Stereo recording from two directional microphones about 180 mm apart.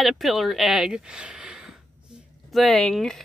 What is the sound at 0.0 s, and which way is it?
Speech, centre (ahead or behind).